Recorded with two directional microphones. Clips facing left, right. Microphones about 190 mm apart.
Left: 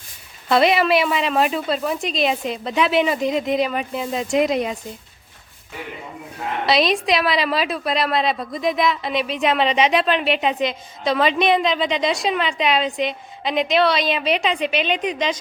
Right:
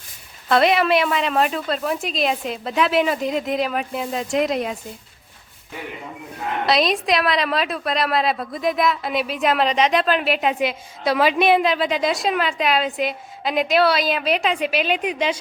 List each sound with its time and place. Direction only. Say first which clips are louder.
0.4 s a woman's voice: even; centre (ahead or behind)
6.7 s a woman's voice: left 1 dB; centre (ahead or behind)